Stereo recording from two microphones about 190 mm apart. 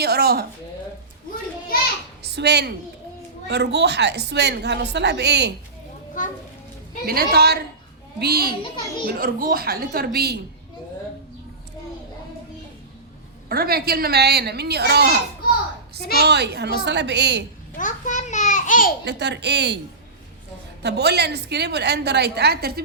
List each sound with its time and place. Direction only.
0.0 s a woman's voice: 55° right (ahead or behind)
2.2 s a woman's voice: 60° right (ahead or behind)
6.2 s a child's voice: 45° left (ahead or behind)
7.0 s a woman's voice: 50° right (ahead or behind)
13.5 s a woman's voice: 50° right (ahead or behind)
16.0 s a woman's voice: 55° left (ahead or behind)
16.2 s a woman's voice: 60° right (ahead or behind)
17.7 s babbling: 40° left (ahead or behind)
19.0 s a woman's voice: 65° right (ahead or behind)
20.8 s a woman's voice: 60° right (ahead or behind)